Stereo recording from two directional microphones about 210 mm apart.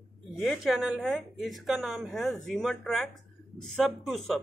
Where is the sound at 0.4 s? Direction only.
Centre (ahead or behind).